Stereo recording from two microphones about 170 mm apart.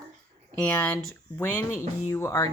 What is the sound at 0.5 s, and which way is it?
A woman's voice, 10° left (ahead or behind).